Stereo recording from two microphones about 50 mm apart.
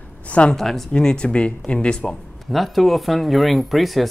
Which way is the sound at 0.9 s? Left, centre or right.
Centre.